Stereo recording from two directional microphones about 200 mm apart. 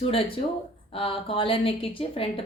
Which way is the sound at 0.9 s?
25° left (ahead or behind).